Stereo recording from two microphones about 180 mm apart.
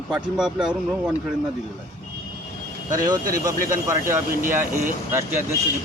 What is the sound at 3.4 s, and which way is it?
Speech, 15° right (ahead or behind).